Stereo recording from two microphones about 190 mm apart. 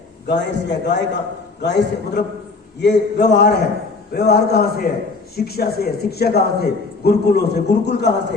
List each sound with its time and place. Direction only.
0.3 s a man's voice: 65° left (ahead or behind)